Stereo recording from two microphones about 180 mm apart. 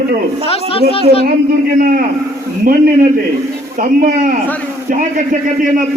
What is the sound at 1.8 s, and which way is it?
A man's voice, 50° right (ahead or behind).